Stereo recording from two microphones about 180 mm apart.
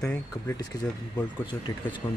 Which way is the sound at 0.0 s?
5° left (ahead or behind).